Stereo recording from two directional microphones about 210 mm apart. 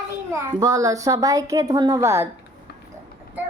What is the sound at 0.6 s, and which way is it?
Speech, 15° right (ahead or behind).